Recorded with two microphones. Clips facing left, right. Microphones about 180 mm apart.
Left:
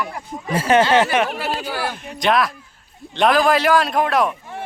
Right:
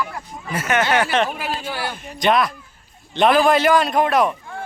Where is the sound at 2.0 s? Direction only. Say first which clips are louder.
Right 1 dB; centre (ahead or behind).